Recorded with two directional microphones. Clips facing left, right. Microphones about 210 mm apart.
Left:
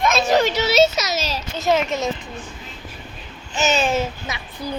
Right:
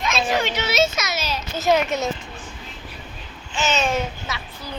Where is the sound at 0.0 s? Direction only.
45° left (ahead or behind).